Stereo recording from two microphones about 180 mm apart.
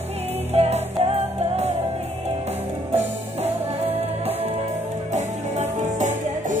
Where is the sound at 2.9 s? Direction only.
35° right (ahead or behind).